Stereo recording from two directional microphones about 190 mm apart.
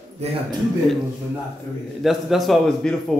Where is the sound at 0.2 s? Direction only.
30° right (ahead or behind).